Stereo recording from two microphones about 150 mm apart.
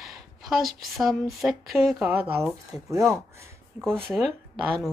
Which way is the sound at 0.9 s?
Centre (ahead or behind).